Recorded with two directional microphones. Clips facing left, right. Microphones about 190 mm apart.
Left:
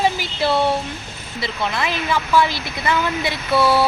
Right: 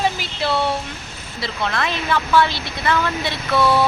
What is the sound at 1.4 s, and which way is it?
Speech, 5° left (ahead or behind).